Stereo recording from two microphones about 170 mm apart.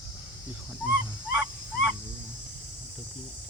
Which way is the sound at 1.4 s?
5° right (ahead or behind).